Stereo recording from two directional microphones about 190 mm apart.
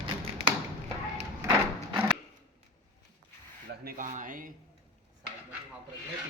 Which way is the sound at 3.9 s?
45° right (ahead or behind).